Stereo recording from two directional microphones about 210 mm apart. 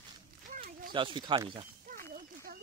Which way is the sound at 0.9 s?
25° right (ahead or behind).